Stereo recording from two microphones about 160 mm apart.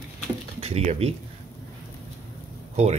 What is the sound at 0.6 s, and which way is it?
Speech, 40° right (ahead or behind).